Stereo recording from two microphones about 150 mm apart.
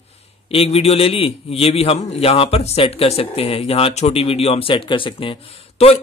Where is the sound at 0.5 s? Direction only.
40° left (ahead or behind).